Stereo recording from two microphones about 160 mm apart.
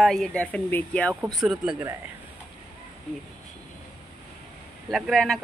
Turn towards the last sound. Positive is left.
turn(degrees=0)  # may be behind; listen again after turning